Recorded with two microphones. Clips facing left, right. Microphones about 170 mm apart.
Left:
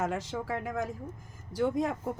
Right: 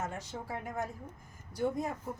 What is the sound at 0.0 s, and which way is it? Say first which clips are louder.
Speech: left 7 dB; 90° left.